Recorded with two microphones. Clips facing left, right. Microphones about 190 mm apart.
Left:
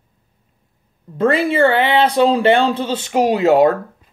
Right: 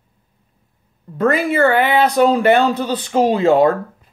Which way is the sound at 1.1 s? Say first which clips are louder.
Left 1 dB; 30° left (ahead or behind).